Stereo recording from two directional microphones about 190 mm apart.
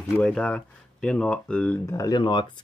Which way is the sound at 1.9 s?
20° left (ahead or behind).